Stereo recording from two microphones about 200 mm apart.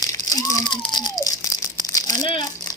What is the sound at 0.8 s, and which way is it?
Rattle, 20° left (ahead or behind).